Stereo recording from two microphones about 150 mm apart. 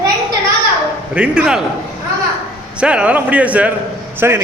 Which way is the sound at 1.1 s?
5° right (ahead or behind).